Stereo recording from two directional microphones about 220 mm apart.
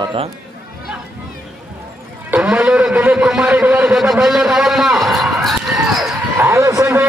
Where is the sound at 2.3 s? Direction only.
5° right (ahead or behind).